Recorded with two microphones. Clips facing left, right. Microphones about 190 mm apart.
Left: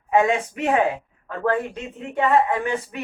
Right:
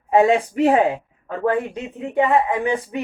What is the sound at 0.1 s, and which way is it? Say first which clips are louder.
Speech: right 4 dB; 35° right (ahead or behind).